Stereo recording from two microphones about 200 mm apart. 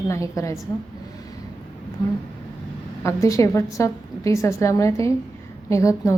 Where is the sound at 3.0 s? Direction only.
15° left (ahead or behind).